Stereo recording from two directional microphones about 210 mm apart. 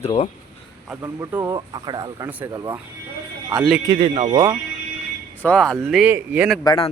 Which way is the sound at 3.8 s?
25° right (ahead or behind).